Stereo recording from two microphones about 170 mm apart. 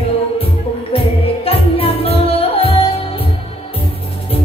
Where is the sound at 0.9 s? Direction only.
35° left (ahead or behind).